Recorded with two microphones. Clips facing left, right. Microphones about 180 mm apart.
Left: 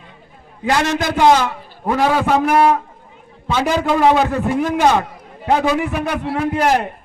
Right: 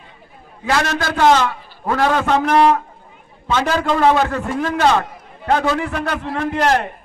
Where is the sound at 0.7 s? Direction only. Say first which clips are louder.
Left 2 dB; 20° left (ahead or behind).